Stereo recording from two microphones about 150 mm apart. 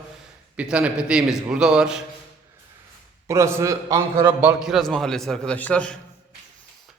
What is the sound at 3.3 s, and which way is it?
A man's voice, 20° right (ahead or behind).